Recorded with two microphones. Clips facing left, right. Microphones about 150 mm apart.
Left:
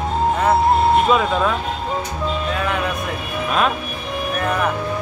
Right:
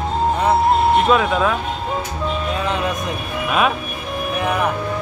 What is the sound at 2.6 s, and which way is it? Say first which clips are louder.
Music: right 2 dB; 20° right (ahead or behind).